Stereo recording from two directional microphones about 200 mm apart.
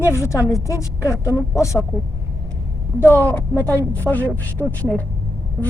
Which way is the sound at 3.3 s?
10° left (ahead or behind).